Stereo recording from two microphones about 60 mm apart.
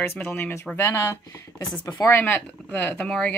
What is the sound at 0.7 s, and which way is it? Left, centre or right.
Speech, left.